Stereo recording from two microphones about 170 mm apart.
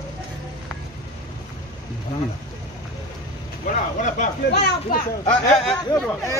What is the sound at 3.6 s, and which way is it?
Speech, 45° left (ahead or behind).